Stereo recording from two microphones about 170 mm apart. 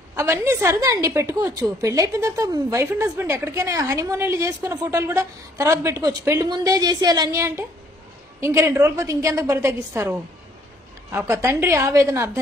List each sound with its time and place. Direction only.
0.1 s a woman's voice: 15° right (ahead or behind)